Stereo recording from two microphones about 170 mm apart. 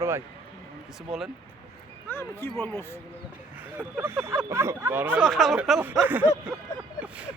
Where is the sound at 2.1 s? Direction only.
15° left (ahead or behind).